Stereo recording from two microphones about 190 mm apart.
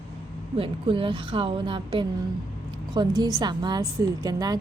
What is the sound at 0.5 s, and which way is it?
A woman's voice, 30° right (ahead or behind).